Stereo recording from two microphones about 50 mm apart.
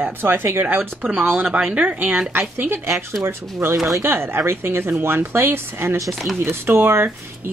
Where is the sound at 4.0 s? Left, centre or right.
Right.